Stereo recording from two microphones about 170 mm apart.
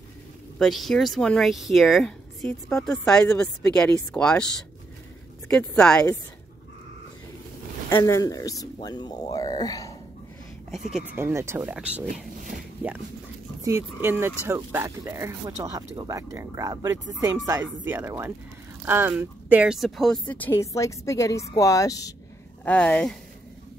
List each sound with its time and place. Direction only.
0.6 s speech: centre (ahead or behind)
7.9 s speech: 15° left (ahead or behind)
11.1 s speech: 15° right (ahead or behind)
13.6 s a sound: 20° right (ahead or behind)
14.0 s speech: 15° right (ahead or behind); by 22.1 s 20° left (ahead or behind)
22.7 s speech: 10° left (ahead or behind)